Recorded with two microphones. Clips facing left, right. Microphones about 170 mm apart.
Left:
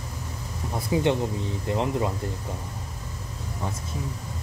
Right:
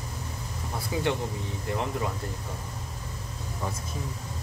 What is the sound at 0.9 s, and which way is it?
Speech, 20° left (ahead or behind).